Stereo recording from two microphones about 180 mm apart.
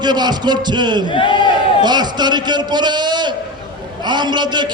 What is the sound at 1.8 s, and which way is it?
A man's voice, 25° right (ahead or behind).